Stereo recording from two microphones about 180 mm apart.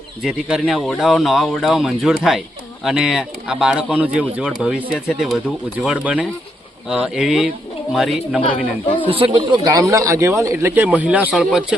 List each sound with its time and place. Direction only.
0.2 s speech: 5° right (ahead or behind)
8.4 s a woman's voice: 30° left (ahead or behind)
9.0 s speech: 30° right (ahead or behind)
9.6 s speech: 20° right (ahead or behind)